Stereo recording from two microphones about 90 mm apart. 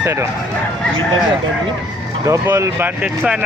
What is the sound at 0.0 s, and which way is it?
Speech, 30° right (ahead or behind).